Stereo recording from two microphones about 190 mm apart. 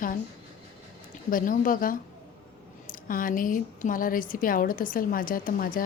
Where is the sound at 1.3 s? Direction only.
45° left (ahead or behind).